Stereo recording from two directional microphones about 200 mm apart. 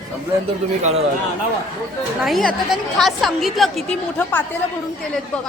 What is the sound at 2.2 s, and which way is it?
A woman's voice, centre (ahead or behind).